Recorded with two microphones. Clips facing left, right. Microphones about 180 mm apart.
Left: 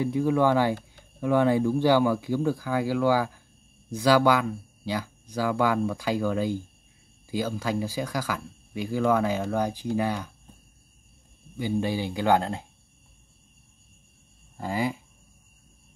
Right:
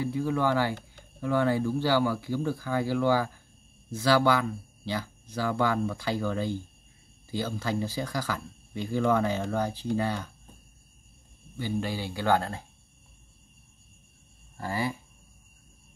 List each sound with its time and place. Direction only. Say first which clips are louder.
0.0 s speech: left 5 dB; 15° left (ahead or behind)
11.5 s speech: left 4 dB; 15° left (ahead or behind)
14.6 s speech: left 3 dB; 15° left (ahead or behind)